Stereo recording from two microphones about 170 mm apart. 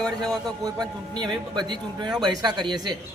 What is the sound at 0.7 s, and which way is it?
A man's voice, 25° right (ahead or behind).